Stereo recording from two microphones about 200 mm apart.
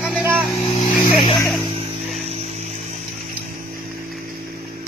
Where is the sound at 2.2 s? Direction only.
30° right (ahead or behind).